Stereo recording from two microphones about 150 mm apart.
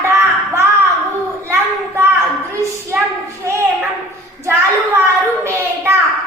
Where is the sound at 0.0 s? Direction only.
20° right (ahead or behind).